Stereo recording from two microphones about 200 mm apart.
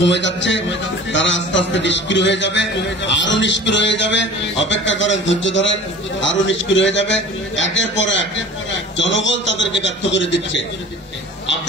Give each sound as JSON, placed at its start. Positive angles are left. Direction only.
{"t": 0.0, "sound": "a man's voice", "side_deg": 65}